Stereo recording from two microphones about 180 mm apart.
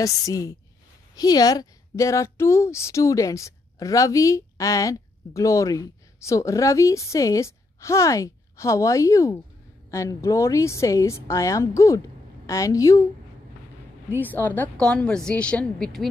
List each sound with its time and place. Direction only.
0.0 s a woman's voice: 20° left (ahead or behind)
14.2 s a woman's voice: 10° left (ahead or behind)